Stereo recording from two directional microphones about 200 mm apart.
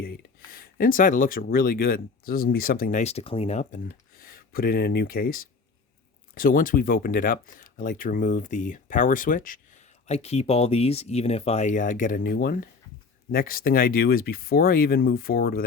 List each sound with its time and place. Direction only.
0.0 s speech: 45° left (ahead or behind)
4.2 s speech: 45° left (ahead or behind)